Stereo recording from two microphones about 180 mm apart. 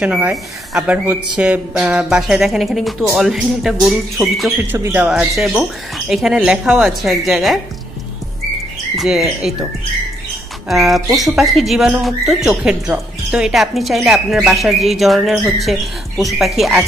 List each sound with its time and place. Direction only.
0.0 s a woman's voice: 5° right (ahead or behind)
4.6 s speech: 15° right (ahead or behind)
4.9 s a woman's voice: 5° right (ahead or behind)
8.9 s a woman's voice: centre (ahead or behind)
10.7 s a woman's voice: centre (ahead or behind)